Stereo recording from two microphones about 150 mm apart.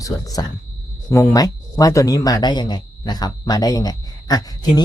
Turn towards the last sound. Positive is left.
turn(degrees=25)  # may be behind; listen again after turning